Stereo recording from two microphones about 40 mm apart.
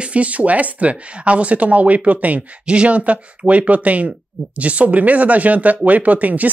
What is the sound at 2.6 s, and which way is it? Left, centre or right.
Speech, right.